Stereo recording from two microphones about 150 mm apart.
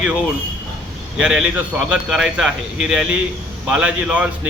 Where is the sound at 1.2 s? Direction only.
5° right (ahead or behind).